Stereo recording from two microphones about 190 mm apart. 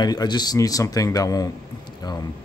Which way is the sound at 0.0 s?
20° left (ahead or behind).